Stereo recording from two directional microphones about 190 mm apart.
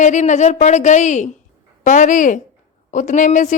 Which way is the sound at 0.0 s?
40° left (ahead or behind).